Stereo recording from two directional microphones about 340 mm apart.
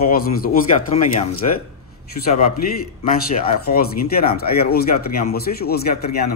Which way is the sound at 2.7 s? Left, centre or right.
Left.